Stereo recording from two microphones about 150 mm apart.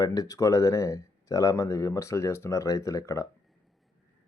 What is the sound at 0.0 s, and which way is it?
Speech, 25° left (ahead or behind).